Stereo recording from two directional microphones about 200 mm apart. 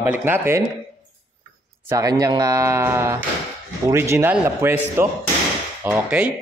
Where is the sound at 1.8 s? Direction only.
15° right (ahead or behind).